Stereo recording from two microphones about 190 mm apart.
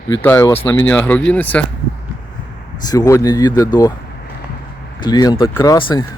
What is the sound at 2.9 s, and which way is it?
Speech, 20° left (ahead or behind).